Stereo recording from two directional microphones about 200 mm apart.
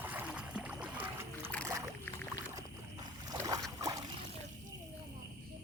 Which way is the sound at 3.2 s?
20° right (ahead or behind).